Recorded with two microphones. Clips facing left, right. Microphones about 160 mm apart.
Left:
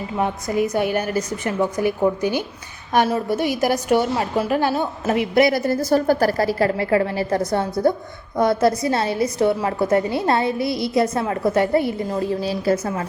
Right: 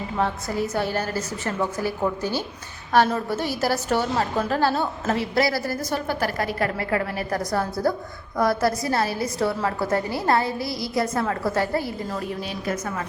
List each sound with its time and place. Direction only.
0.2 s a woman's voice: 15° left (ahead or behind)
5.9 s a woman's voice: 40° left (ahead or behind)